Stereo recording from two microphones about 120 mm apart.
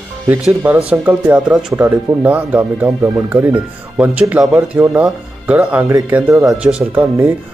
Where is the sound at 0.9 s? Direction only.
15° right (ahead or behind).